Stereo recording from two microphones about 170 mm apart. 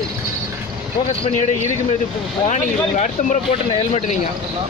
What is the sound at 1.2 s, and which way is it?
Speech, 45° left (ahead or behind).